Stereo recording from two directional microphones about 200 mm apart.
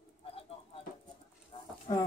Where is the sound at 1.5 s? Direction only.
25° left (ahead or behind).